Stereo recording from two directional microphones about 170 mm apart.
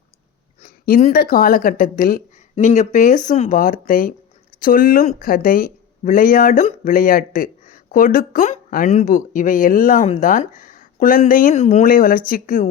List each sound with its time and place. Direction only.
0.6 s speech: 50° left (ahead or behind)
11.5 s speech: 40° left (ahead or behind)